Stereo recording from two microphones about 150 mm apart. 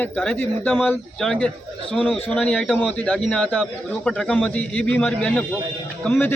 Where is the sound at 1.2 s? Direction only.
5° left (ahead or behind).